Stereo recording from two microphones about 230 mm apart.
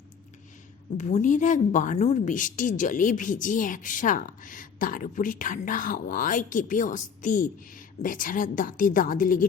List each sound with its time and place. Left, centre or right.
0.9 s a woman's voice: left